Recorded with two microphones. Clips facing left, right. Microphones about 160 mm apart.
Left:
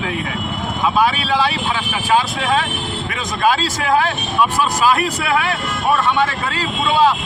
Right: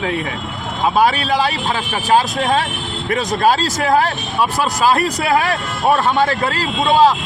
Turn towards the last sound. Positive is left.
turn(degrees=-40)  # may be behind; listen again after turning